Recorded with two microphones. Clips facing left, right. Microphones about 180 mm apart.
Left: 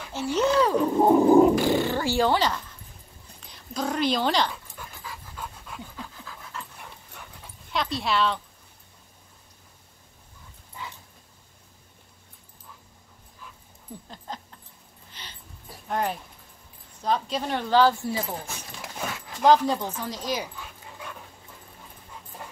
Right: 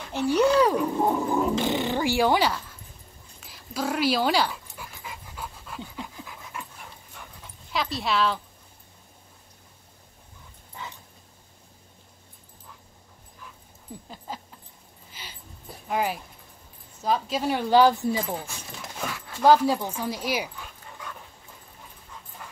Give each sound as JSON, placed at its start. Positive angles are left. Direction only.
{"t": 0.1, "sound": "speech", "side_deg": -15}
{"t": 1.1, "sound": "a sound", "side_deg": 35}
{"t": 1.5, "sound": "speech", "side_deg": -20}
{"t": 3.3, "sound": "dog", "side_deg": -5}
{"t": 5.0, "sound": "pant", "side_deg": -20}
{"t": 5.4, "sound": "dog", "side_deg": -10}
{"t": 7.7, "sound": "speech", "side_deg": 0}
{"t": 14.0, "sound": "a sound", "side_deg": -5}
{"t": 15.9, "sound": "speech", "side_deg": -5}
{"t": 19.4, "sound": "speech", "side_deg": -10}